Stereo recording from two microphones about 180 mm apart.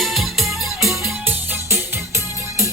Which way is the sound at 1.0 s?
10° right (ahead or behind).